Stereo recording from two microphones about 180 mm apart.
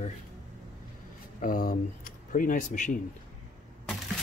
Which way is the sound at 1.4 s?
50° left (ahead or behind).